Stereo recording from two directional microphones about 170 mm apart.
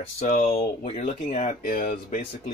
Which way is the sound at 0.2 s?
50° left (ahead or behind).